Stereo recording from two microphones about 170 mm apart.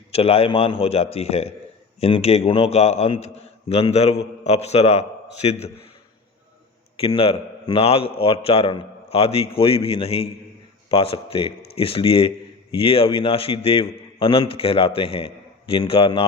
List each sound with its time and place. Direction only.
0.1 s a man's voice: 35° left (ahead or behind)
7.0 s a man's voice: 35° left (ahead or behind)